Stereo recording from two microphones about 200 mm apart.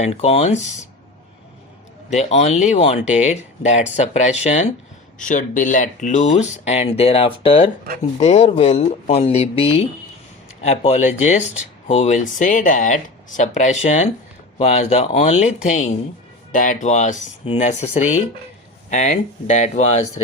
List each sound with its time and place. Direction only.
0.0 s speech: 30° left (ahead or behind)
2.0 s speech: 35° left (ahead or behind)